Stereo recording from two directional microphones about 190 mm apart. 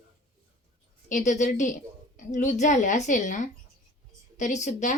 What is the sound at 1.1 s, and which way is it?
A woman's voice, 40° left (ahead or behind).